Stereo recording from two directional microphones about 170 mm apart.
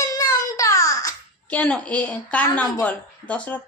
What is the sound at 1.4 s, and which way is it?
A woman's voice, 10° left (ahead or behind).